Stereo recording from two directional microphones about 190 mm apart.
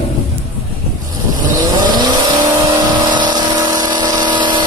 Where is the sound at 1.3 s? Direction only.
20° right (ahead or behind).